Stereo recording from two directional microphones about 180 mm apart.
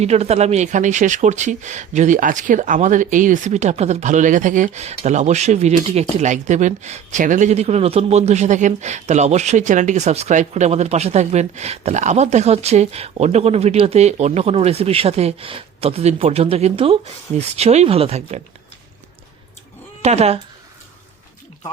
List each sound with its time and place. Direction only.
0.0 s speech: 35° right (ahead or behind)
20.0 s speech: 35° right (ahead or behind)